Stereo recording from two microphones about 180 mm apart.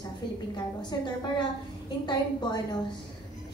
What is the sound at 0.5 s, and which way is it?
A woman's voice, 25° left (ahead or behind).